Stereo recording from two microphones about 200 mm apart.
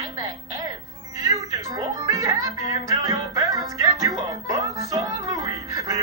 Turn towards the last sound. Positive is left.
turn(degrees=-15)  # may be behind; listen again after turning